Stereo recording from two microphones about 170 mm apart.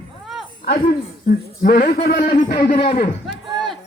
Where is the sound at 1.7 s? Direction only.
55° left (ahead or behind).